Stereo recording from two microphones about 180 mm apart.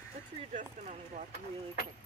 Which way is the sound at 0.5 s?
40° right (ahead or behind).